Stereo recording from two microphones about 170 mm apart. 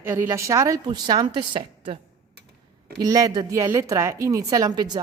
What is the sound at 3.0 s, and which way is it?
A woman's voice, 20° right (ahead or behind).